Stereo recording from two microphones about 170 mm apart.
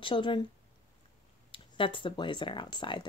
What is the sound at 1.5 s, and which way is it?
Speech, 30° left (ahead or behind).